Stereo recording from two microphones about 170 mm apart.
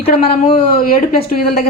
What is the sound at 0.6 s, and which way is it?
Speech, 60° left (ahead or behind).